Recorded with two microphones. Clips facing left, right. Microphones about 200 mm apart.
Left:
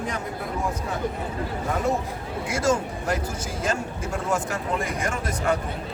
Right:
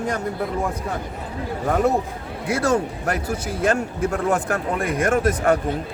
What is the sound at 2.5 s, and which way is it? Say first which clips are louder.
A man's voice: right 4 dB; 60° right (ahead or behind).